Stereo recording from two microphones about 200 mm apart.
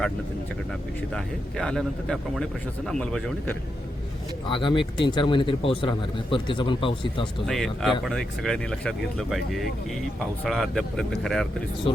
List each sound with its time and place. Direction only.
0.7 s speech: centre (ahead or behind)
4.4 s speech: 25° left (ahead or behind)
7.4 s speech: centre (ahead or behind)